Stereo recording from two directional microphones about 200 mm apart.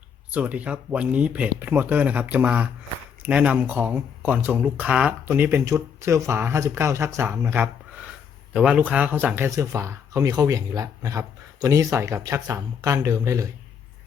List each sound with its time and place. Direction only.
0.3 s speech: 5° right (ahead or behind)